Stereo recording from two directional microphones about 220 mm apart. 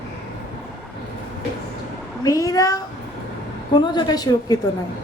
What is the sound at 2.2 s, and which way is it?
Speech, 15° left (ahead or behind).